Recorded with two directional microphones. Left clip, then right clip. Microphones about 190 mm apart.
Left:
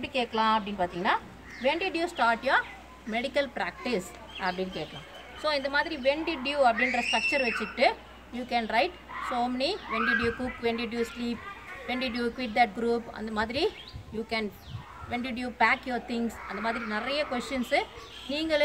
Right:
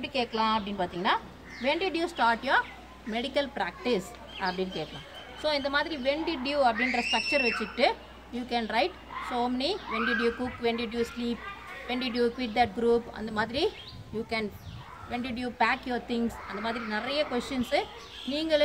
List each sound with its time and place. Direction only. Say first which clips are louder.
0.0 s a child's voice: left 1 dB; 20° left (ahead or behind)
15.0 s a child's voice: left 1 dB; 20° left (ahead or behind)